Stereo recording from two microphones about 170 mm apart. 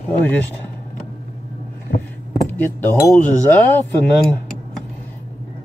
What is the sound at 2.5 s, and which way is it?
Speech, 10° left (ahead or behind).